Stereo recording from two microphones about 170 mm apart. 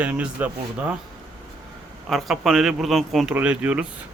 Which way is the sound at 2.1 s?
Centre (ahead or behind).